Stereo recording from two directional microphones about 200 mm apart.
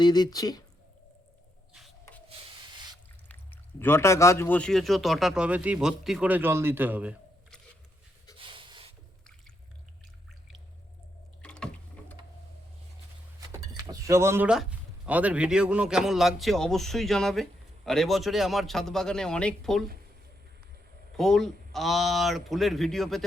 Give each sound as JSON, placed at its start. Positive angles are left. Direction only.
{"t": 0.0, "sound": "speech", "side_deg": 20}
{"t": 1.7, "sound": "rub", "side_deg": 0}
{"t": 3.2, "sound": "speech", "side_deg": 10}
{"t": 8.4, "sound": "a sound", "side_deg": -25}
{"t": 11.4, "sound": "a sound", "side_deg": 5}
{"t": 13.5, "sound": "speech", "side_deg": -15}
{"t": 21.2, "sound": "speech", "side_deg": 0}